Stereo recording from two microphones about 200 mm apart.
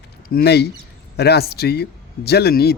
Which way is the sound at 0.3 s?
50° left (ahead or behind).